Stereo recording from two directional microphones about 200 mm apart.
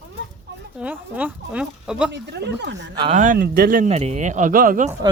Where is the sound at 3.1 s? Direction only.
40° right (ahead or behind).